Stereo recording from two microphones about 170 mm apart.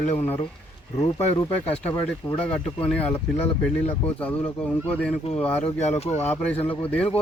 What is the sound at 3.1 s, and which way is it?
Speech, 35° left (ahead or behind).